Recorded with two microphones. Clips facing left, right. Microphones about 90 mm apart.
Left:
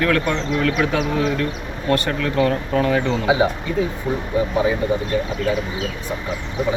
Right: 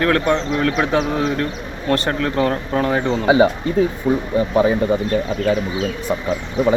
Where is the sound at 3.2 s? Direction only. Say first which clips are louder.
Right 6 dB; 50° right (ahead or behind).